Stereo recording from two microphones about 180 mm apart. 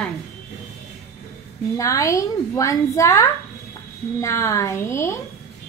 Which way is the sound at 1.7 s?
20° left (ahead or behind).